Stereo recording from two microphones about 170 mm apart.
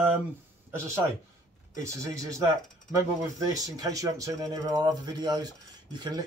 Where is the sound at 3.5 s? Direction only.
20° right (ahead or behind).